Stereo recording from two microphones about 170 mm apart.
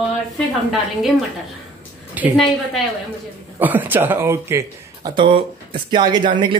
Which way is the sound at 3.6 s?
10° right (ahead or behind).